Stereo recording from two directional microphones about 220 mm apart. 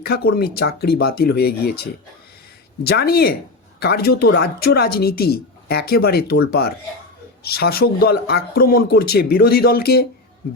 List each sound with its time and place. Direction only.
0.0 s a woman's voice: 45° left (ahead or behind)